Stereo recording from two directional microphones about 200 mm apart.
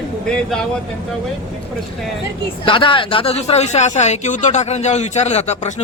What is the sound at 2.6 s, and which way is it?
Speech, 25° left (ahead or behind).